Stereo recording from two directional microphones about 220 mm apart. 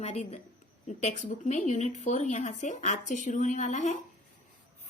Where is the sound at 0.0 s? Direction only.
30° left (ahead or behind).